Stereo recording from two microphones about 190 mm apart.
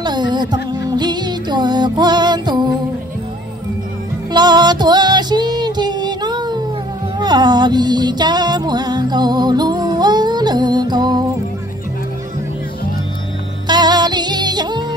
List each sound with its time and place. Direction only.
0.0 s music: 20° right (ahead or behind)
4.3 s music: 20° right (ahead or behind)
13.7 s music: 20° right (ahead or behind)